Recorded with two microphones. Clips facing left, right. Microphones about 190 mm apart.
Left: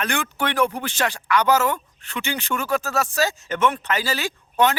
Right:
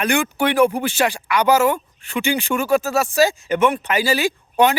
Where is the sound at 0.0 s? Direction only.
10° right (ahead or behind).